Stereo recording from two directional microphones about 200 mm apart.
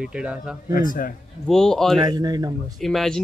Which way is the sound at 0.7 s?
45° left (ahead or behind).